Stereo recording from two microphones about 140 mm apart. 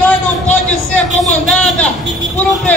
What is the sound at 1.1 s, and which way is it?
Speech, 5° left (ahead or behind).